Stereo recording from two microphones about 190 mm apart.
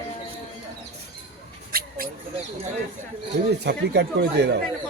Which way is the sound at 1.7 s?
50° right (ahead or behind).